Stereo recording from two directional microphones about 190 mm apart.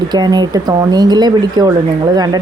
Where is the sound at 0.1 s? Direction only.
20° right (ahead or behind).